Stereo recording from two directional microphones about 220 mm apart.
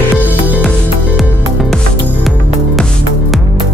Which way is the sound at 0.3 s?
5° right (ahead or behind).